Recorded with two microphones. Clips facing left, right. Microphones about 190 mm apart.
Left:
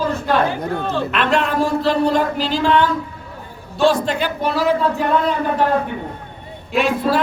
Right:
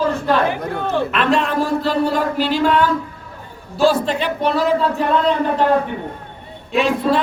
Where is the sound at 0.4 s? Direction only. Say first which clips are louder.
Even; 20° right (ahead or behind).